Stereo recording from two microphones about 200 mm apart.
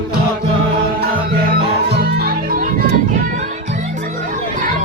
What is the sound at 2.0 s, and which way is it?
Music, 50° right (ahead or behind).